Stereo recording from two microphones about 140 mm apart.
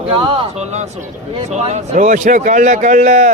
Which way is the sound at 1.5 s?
50° right (ahead or behind).